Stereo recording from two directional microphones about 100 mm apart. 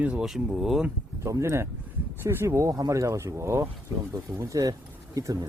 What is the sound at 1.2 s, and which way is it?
Speech, 30° right (ahead or behind).